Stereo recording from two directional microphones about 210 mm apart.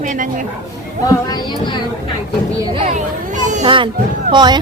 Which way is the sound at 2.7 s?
30° right (ahead or behind).